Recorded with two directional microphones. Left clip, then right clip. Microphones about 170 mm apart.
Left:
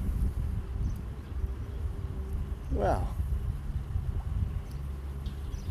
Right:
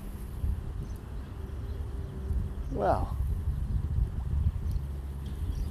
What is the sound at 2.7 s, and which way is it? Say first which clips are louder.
Speech: right 2 dB; 35° left (ahead or behind).